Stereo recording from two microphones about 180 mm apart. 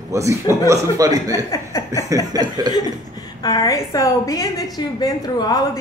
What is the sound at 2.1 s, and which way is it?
Chuckle, 20° right (ahead or behind).